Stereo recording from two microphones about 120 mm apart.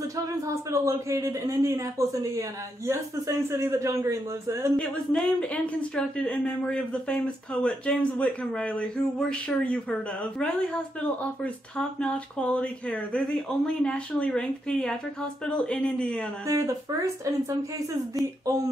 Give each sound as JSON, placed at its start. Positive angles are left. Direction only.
{"t": 0.7, "sound": "speech", "side_deg": -25}
{"t": 4.7, "sound": "speech", "side_deg": 10}
{"t": 12.0, "sound": "speech", "side_deg": 10}
{"t": 16.4, "sound": "speech", "side_deg": -30}